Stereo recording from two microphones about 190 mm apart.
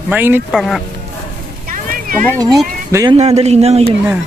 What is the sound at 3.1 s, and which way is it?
Speech, 35° right (ahead or behind).